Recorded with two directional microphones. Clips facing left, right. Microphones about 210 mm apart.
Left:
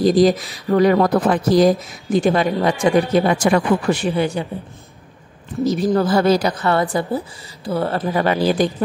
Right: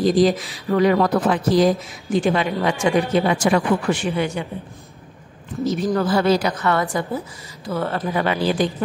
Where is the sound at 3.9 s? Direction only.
35° left (ahead or behind).